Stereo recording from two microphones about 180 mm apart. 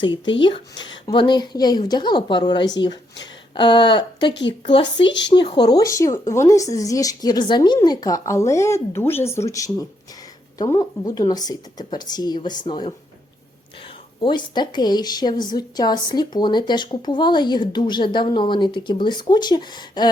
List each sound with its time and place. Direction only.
0.0 s a woman's voice: 25° left (ahead or behind)
4.9 s speech: 85° left
5.3 s a woman's voice: 25° left (ahead or behind)
14.2 s a woman's voice: 25° left (ahead or behind)